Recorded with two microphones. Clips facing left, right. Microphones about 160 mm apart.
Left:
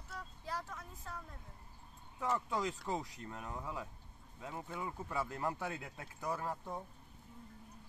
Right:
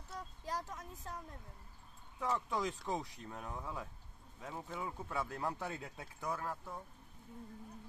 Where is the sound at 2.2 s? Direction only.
5° left (ahead or behind).